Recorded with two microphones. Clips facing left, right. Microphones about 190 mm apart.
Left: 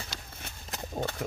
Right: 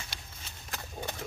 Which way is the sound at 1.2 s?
55° left (ahead or behind).